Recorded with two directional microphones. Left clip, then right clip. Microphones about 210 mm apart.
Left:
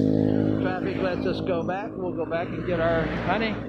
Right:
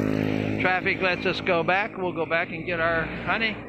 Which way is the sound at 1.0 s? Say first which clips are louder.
Right 2 dB; 10° right (ahead or behind).